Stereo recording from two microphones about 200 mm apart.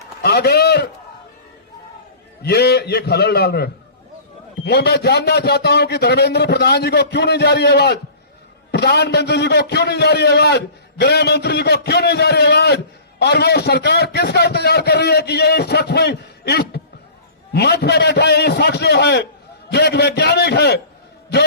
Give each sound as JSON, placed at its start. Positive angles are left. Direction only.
{"t": 0.2, "sound": "a man's voice", "side_deg": 55}
{"t": 2.4, "sound": "a man's voice", "side_deg": 55}